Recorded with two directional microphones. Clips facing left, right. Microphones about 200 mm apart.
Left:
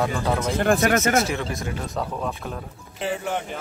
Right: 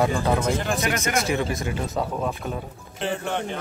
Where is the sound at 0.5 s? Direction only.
55° left (ahead or behind).